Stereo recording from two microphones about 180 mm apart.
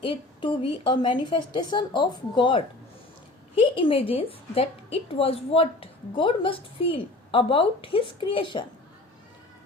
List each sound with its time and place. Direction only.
0.0 s a woman's voice: 30° left (ahead or behind)